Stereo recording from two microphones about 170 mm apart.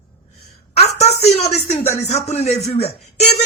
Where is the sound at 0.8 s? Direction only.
35° left (ahead or behind).